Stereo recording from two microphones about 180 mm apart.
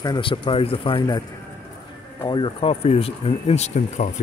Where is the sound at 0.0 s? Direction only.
25° left (ahead or behind).